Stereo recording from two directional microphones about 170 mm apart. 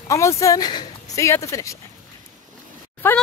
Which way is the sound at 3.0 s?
15° left (ahead or behind).